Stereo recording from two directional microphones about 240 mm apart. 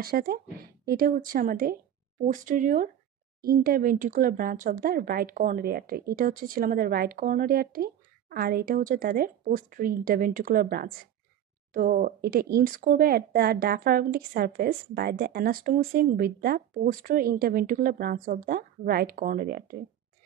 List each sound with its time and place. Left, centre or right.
0.0 s speech: right